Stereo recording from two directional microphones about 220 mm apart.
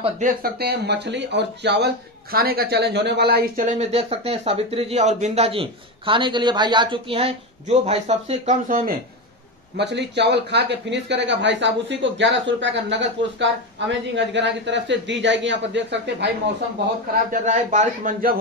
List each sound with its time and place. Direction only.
0.4 s speech: 45° right (ahead or behind)
9.8 s speech: 50° right (ahead or behind)
17.3 s speech: 35° right (ahead or behind)